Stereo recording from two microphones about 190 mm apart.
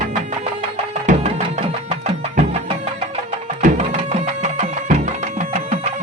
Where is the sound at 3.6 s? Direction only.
35° right (ahead or behind).